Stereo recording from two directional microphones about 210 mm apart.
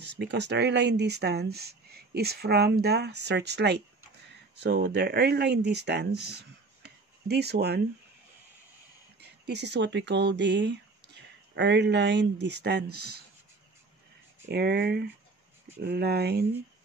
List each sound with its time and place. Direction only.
0.1 s speech: 55° right (ahead or behind)
9.2 s speech: 55° right (ahead or behind)
14.5 s speech: 50° right (ahead or behind)